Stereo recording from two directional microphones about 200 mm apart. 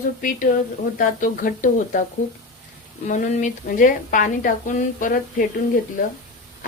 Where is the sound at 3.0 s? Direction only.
40° left (ahead or behind).